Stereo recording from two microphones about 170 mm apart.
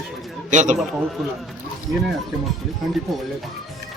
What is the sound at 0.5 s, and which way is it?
Speech, 45° right (ahead or behind).